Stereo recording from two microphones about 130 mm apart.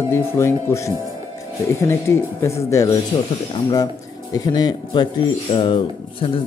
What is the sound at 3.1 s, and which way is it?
Speech, 35° left (ahead or behind).